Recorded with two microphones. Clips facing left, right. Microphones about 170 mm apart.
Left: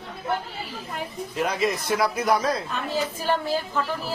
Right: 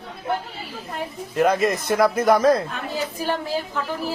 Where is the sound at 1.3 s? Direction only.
50° right (ahead or behind).